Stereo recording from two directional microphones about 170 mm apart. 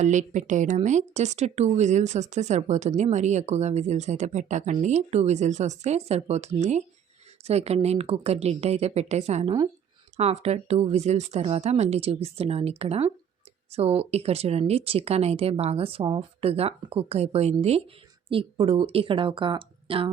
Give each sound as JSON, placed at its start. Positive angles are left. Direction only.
{"t": 0.0, "sound": "speech", "side_deg": -45}